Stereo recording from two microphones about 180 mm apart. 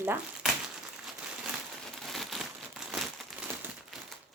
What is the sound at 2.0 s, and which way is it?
Crumpling, centre (ahead or behind).